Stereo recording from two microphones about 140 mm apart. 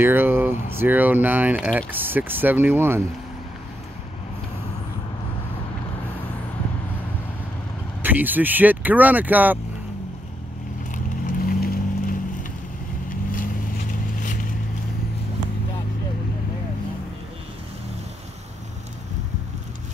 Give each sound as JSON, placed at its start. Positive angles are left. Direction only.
{"t": 0.0, "sound": "speech", "side_deg": -15}
{"t": 8.0, "sound": "speech", "side_deg": -15}
{"t": 11.3, "sound": "vehicle", "side_deg": 90}